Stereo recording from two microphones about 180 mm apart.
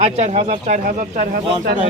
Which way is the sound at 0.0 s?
35° right (ahead or behind).